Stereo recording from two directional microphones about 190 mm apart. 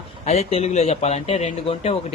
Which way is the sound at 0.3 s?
35° left (ahead or behind).